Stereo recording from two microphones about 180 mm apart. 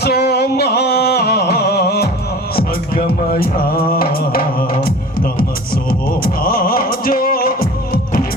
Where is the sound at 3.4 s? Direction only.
55° left (ahead or behind).